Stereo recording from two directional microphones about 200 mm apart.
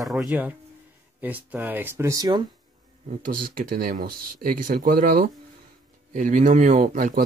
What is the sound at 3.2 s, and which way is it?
Speech, 45° right (ahead or behind).